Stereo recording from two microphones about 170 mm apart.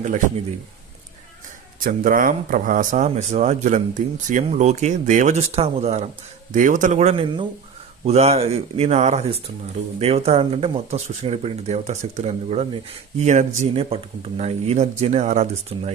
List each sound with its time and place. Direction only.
1.8 s speech: 55° right (ahead or behind)
6.5 s speech: 50° right (ahead or behind)